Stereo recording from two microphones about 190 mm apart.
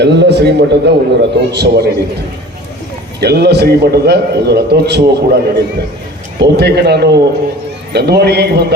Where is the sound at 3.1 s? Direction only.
60° right (ahead or behind).